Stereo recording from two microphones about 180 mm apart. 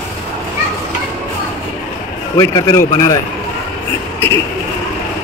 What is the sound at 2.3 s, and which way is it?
Speech, 20° left (ahead or behind).